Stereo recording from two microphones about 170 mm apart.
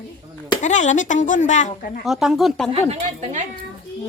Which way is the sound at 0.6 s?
45° left (ahead or behind).